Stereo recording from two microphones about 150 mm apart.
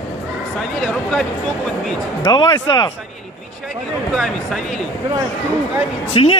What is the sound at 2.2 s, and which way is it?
Speech, 30° left (ahead or behind).